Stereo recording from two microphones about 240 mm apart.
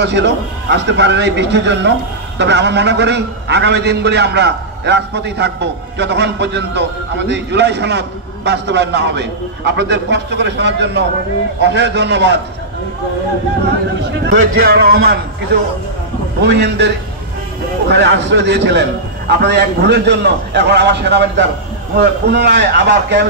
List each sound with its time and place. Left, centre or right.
0.0 s a man's voice: right
14.2 s a man's voice: right